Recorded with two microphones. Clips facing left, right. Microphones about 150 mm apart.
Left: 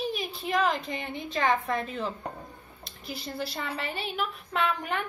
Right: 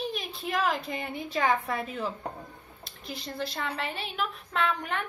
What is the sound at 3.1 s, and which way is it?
A woman's voice, 5° left (ahead or behind).